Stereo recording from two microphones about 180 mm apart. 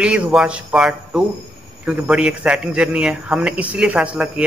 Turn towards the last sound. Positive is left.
turn(degrees=-5)  # may be behind; listen again after turning